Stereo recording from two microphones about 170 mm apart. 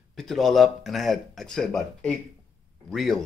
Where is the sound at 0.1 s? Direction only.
Centre (ahead or behind).